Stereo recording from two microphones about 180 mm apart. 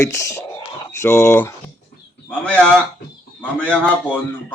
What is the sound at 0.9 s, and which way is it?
Speech, 15° left (ahead or behind).